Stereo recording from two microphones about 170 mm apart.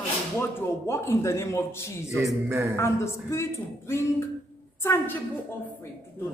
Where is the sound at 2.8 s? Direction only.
15° left (ahead or behind).